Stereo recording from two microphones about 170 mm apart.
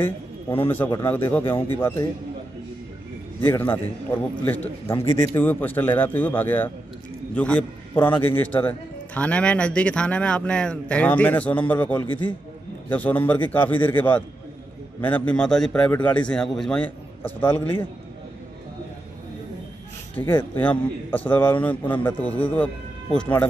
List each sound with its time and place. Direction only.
0.0 s a man's voice: 10° left (ahead or behind)
3.4 s a man's voice: 10° left (ahead or behind)
20.2 s a man's voice: 20° left (ahead or behind)